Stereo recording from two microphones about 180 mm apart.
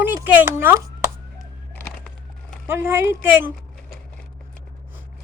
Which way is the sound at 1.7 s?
5° left (ahead or behind).